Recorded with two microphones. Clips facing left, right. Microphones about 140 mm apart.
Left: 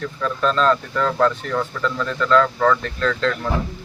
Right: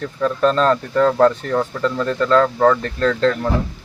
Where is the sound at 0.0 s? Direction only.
40° right (ahead or behind).